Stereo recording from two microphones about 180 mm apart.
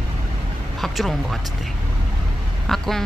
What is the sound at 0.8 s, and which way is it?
Speech, centre (ahead or behind).